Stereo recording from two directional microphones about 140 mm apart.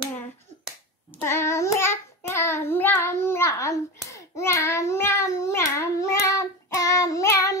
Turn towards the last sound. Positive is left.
turn(degrees=20)  # may be behind; listen again after turning